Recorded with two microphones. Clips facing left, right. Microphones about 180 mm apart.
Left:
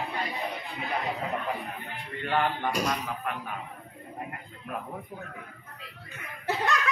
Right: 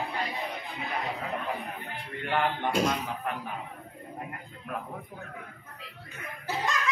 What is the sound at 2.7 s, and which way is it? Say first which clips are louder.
Speech: right 2 dB; 25° right (ahead or behind).